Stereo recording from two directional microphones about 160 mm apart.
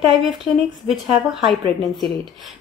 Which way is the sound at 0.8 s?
Centre (ahead or behind).